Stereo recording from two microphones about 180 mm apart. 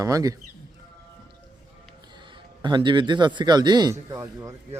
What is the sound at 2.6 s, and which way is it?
Speech, 25° right (ahead or behind).